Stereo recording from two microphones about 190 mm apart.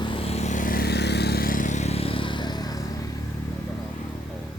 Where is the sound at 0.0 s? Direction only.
30° left (ahead or behind).